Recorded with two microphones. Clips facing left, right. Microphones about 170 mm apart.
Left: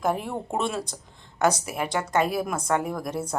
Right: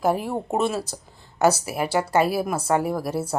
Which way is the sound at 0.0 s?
5° right (ahead or behind).